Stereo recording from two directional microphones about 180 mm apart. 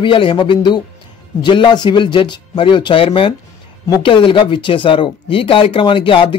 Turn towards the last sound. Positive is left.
turn(degrees=30)  # may be behind; listen again after turning